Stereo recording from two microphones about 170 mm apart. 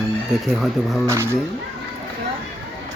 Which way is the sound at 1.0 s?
15° right (ahead or behind).